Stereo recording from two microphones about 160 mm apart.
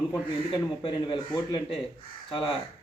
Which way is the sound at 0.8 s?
30° left (ahead or behind).